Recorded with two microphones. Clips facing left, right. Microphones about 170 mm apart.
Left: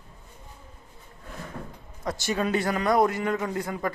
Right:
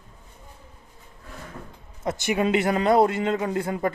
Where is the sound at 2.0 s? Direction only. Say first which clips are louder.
Right 4 dB; 20° right (ahead or behind).